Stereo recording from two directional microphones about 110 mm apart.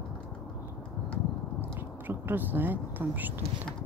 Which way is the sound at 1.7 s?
20° right (ahead or behind).